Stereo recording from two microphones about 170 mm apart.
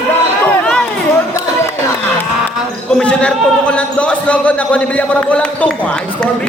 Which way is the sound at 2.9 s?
5° left (ahead or behind).